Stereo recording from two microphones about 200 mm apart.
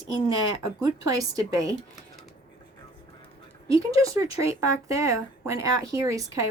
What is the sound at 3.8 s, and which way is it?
Speech, 15° right (ahead or behind).